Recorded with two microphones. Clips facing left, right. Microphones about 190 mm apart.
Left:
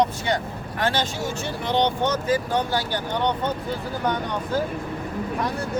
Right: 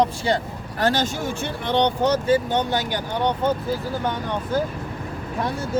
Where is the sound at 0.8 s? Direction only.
45° right (ahead or behind).